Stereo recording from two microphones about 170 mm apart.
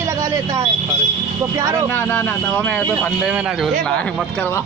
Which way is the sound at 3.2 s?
5° right (ahead or behind).